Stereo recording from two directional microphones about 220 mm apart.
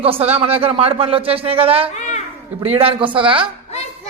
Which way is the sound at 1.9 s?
30° left (ahead or behind).